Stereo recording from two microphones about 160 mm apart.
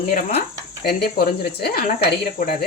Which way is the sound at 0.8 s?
80° left.